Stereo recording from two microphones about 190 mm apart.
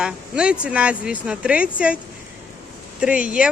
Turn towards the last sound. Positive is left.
turn(degrees=-5)  # may be behind; listen again after turning